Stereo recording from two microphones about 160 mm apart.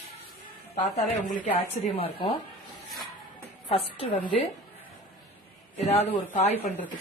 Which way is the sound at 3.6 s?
35° left (ahead or behind).